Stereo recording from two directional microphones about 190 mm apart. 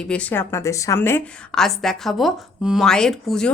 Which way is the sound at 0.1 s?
10° left (ahead or behind).